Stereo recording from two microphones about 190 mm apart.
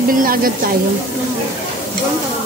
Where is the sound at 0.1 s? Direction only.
50° right (ahead or behind).